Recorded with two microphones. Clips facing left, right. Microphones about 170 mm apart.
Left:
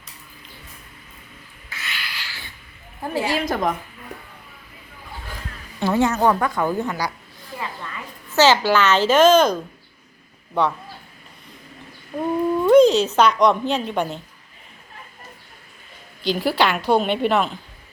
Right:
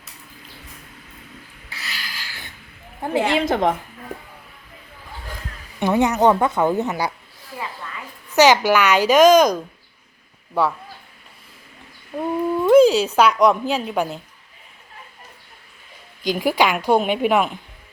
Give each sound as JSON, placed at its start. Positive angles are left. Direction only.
{"t": 1.7, "sound": "a sound", "side_deg": -35}
{"t": 3.0, "sound": "a woman's voice", "side_deg": -20}
{"t": 5.8, "sound": "a woman's voice", "side_deg": -15}
{"t": 8.4, "sound": "a woman's voice", "side_deg": -15}
{"t": 12.1, "sound": "a woman's voice", "side_deg": 0}
{"t": 16.2, "sound": "a woman's voice", "side_deg": -15}